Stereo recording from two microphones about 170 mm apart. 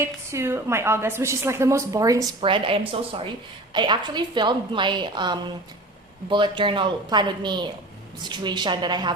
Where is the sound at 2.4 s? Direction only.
30° right (ahead or behind).